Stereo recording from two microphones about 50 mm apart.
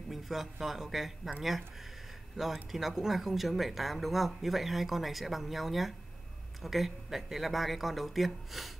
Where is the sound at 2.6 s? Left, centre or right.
Centre.